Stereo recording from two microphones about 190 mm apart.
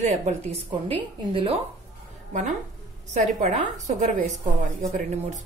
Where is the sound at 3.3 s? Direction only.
40° right (ahead or behind).